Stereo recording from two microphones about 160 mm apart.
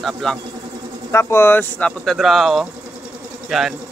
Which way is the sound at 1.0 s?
15° left (ahead or behind).